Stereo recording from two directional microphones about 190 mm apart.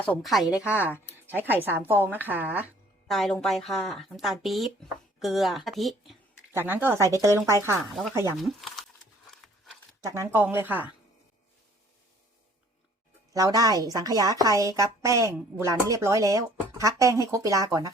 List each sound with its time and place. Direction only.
0.0 s a woman's voice: 5° left (ahead or behind)
3.1 s a woman's voice: centre (ahead or behind)
6.5 s speech: 10° right (ahead or behind)
7.9 s a woman's voice: centre (ahead or behind)
8.4 s a sound: centre (ahead or behind)
10.0 s speech: 15° right (ahead or behind)
13.3 s a woman's voice: 20° right (ahead or behind)